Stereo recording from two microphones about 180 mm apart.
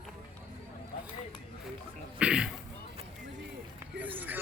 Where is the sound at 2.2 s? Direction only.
5° right (ahead or behind).